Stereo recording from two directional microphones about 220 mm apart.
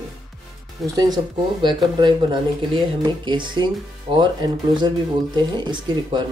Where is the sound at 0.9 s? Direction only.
20° right (ahead or behind).